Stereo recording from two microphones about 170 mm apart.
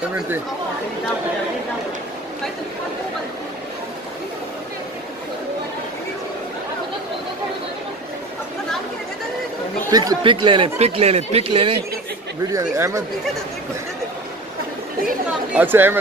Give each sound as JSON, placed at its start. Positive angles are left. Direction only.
{"t": 9.8, "sound": "speech", "side_deg": -25}
{"t": 12.4, "sound": "speech", "side_deg": -20}
{"t": 15.2, "sound": "speech", "side_deg": -10}